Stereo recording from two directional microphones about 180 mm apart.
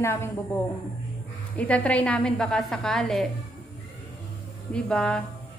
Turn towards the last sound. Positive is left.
turn(degrees=5)  # may be behind; listen again after turning